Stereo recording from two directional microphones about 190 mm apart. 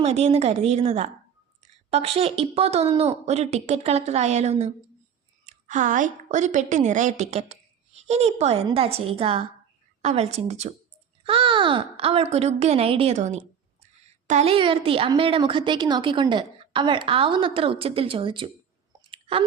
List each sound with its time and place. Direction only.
0.0 s a child's voice: 35° right (ahead or behind)
19.1 s chewing: 30° right (ahead or behind)